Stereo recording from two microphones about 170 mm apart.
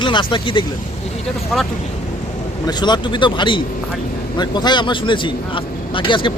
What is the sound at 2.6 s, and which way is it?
Speech, 25° left (ahead or behind).